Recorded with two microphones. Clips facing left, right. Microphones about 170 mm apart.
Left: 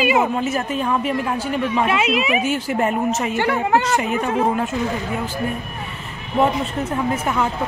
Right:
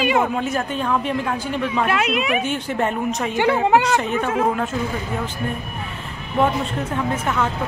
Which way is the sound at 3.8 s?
5° left (ahead or behind).